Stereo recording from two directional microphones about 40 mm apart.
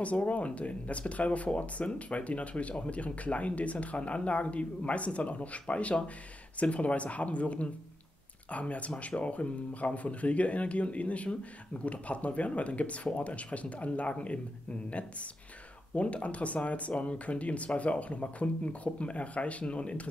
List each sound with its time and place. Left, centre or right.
0.0 s speech: left